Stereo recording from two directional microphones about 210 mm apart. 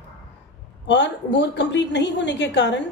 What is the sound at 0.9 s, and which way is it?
A woman's voice, 55° left (ahead or behind).